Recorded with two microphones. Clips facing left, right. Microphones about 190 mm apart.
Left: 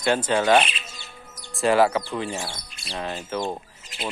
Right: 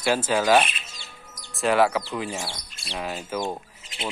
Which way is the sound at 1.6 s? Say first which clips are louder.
Left 2 dB; centre (ahead or behind).